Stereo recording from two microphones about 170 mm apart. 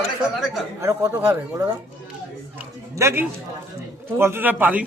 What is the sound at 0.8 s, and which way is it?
Speech, 15° right (ahead or behind).